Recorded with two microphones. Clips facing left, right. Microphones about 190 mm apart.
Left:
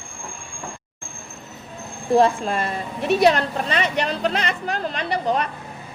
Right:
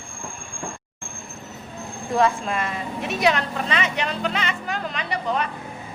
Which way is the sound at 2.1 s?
35° left (ahead or behind).